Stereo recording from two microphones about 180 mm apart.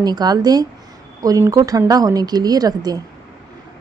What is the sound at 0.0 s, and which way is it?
A woman's voice, 20° right (ahead or behind).